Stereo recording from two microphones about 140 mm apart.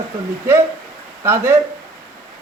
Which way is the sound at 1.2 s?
20° right (ahead or behind).